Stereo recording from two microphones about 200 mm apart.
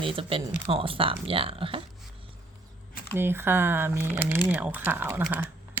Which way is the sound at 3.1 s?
10° right (ahead or behind).